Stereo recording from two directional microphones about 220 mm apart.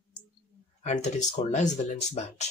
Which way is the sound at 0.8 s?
30° left (ahead or behind).